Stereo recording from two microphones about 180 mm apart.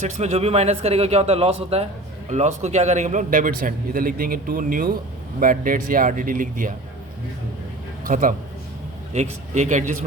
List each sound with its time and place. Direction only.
0.0 s a man's voice: 40° right (ahead or behind)
8.0 s a man's voice: 50° right (ahead or behind)